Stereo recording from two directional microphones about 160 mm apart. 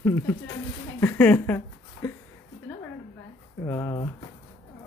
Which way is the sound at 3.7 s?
20° left (ahead or behind).